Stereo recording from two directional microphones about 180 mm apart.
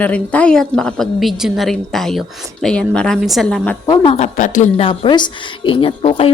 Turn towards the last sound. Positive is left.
turn(degrees=30)  # may be behind; listen again after turning